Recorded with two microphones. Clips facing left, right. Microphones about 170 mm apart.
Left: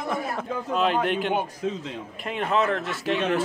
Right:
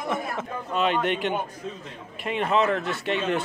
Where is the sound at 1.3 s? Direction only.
90° left.